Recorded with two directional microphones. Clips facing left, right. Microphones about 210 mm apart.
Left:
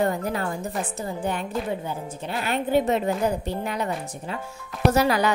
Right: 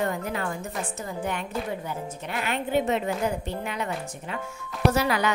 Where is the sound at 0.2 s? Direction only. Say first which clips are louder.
Left 3 dB; 40° left (ahead or behind).